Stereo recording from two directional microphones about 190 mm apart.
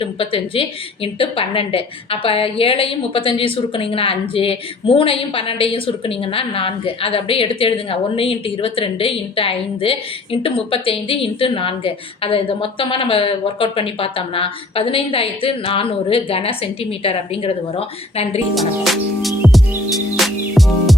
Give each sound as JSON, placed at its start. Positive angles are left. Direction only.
{"t": 0.0, "sound": "a woman's voice", "side_deg": 30}
{"t": 19.2, "sound": "music", "side_deg": 0}